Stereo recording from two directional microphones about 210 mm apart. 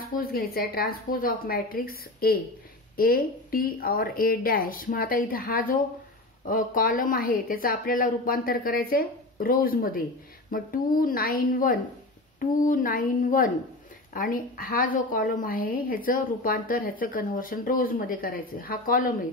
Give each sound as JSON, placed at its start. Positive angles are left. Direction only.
{"t": 0.0, "sound": "a woman's voice", "side_deg": 45}